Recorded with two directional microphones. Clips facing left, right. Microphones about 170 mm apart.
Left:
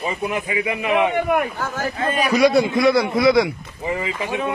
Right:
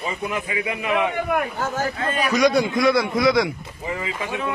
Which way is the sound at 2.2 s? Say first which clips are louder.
Left 3 dB; 10° left (ahead or behind).